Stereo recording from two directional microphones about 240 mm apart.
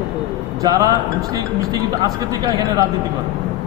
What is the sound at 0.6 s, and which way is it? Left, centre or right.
Speech, centre.